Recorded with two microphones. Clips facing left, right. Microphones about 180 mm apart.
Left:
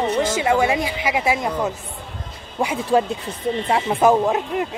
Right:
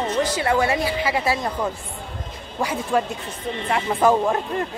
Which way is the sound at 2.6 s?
15° left (ahead or behind).